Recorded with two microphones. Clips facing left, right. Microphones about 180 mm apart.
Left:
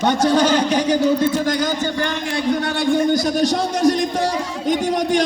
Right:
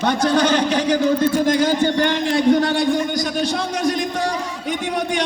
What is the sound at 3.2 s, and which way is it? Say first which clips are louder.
A man's voice: left 4 dB; 40° left (ahead or behind).